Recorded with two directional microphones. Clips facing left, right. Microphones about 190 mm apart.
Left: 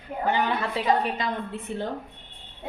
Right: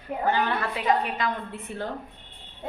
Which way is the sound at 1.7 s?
25° left (ahead or behind).